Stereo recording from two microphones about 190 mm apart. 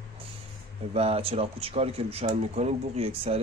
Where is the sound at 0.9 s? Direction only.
30° right (ahead or behind).